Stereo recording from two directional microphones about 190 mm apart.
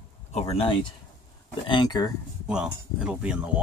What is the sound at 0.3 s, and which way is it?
Speech, 30° left (ahead or behind).